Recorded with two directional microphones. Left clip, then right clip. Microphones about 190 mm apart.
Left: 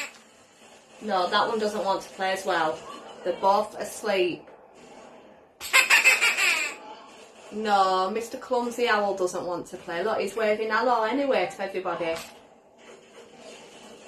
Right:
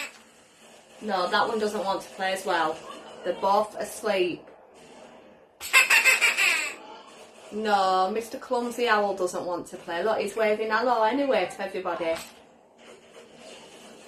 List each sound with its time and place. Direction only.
1.0 s a woman's voice: 5° right (ahead or behind)
5.7 s a sound: centre (ahead or behind)
7.6 s a woman's voice: centre (ahead or behind)